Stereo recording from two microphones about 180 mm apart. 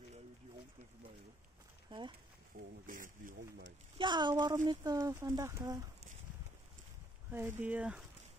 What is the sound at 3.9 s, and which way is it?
Speech, 25° right (ahead or behind).